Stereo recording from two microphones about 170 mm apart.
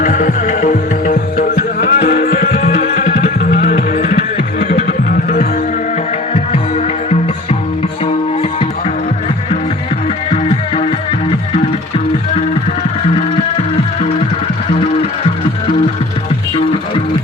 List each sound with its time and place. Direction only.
0.0 s music: 50° left (ahead or behind)
4.7 s music: 60° left (ahead or behind)
6.3 s music: 40° left (ahead or behind)